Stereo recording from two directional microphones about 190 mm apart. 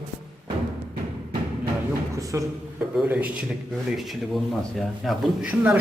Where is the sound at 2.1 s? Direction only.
15° right (ahead or behind).